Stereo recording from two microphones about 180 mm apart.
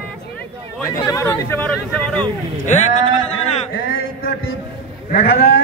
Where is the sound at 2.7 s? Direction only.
40° left (ahead or behind).